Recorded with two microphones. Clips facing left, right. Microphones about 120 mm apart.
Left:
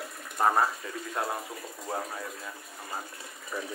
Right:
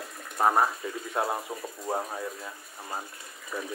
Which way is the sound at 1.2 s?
20° right (ahead or behind).